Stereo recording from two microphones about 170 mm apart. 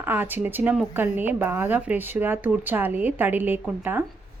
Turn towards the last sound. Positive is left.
turn(degrees=-10)  # may be behind; listen again after turning